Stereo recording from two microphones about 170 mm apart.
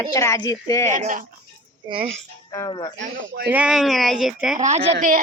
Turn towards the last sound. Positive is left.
turn(degrees=-45)  # may be behind; listen again after turning